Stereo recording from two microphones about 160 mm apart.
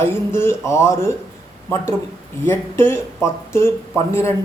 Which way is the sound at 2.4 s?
15° left (ahead or behind).